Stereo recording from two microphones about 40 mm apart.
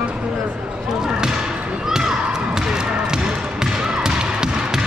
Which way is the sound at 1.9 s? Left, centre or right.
Centre.